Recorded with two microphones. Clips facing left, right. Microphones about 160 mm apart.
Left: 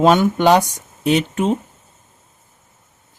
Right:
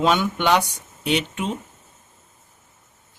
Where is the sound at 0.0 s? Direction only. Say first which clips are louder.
Left 7 dB; 45° left (ahead or behind).